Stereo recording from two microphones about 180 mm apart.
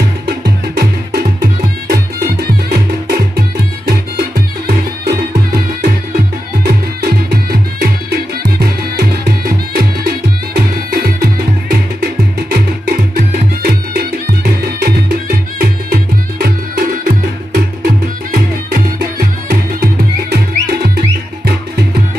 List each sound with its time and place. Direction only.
0.4 s music: 60° right (ahead or behind)